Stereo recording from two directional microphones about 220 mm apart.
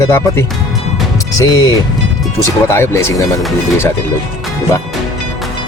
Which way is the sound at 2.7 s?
10° left (ahead or behind).